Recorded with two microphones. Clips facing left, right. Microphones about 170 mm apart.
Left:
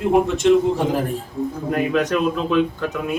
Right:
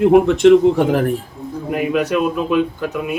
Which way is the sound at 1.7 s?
5° right (ahead or behind).